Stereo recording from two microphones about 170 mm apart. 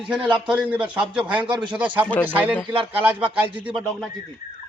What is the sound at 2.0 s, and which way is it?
Speech, 10° left (ahead or behind).